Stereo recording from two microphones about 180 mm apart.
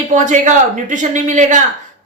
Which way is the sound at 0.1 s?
45° right (ahead or behind).